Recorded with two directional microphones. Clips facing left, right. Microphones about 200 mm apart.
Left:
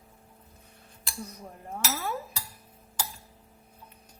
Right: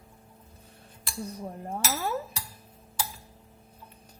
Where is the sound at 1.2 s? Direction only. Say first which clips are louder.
Right 6 dB; 30° right (ahead or behind).